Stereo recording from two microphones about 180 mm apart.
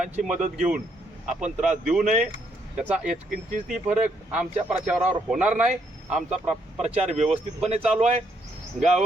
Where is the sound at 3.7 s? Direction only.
5° right (ahead or behind).